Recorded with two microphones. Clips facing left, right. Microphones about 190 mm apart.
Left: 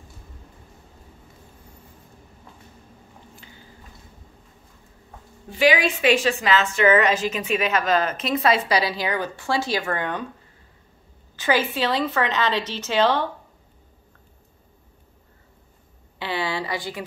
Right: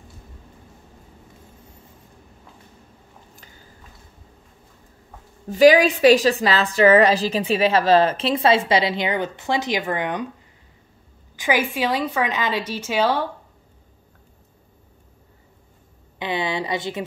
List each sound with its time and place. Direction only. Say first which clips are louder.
5.5 s a woman's voice: right 7 dB; 40° right (ahead or behind); by 10.2 s 15° right (ahead or behind)
11.3 s a woman's voice: even; 15° right (ahead or behind)
16.2 s a woman's voice: right 2 dB; 20° right (ahead or behind)